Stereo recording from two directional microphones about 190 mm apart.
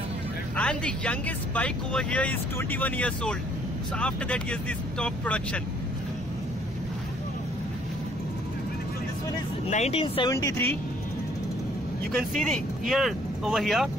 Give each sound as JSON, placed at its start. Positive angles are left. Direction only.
{"t": 0.6, "sound": "speech", "side_deg": 5}
{"t": 9.7, "sound": "speech", "side_deg": 35}
{"t": 10.3, "sound": "speech", "side_deg": 15}
{"t": 12.2, "sound": "speech", "side_deg": 5}